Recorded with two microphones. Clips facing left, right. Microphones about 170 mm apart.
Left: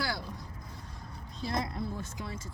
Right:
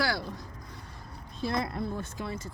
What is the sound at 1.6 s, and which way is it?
Speech, 60° right (ahead or behind).